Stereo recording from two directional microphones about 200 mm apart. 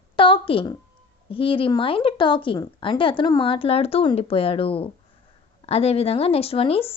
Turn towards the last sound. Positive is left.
turn(degrees=30)  # may be behind; listen again after turning